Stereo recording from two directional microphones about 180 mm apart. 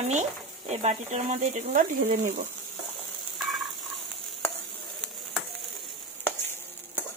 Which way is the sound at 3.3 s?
Centre (ahead or behind).